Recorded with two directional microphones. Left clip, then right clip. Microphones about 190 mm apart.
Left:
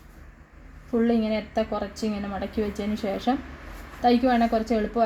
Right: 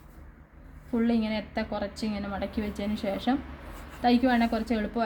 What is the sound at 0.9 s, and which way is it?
A woman's voice, 35° left (ahead or behind).